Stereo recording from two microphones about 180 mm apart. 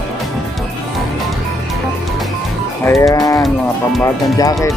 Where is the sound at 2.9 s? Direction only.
20° left (ahead or behind).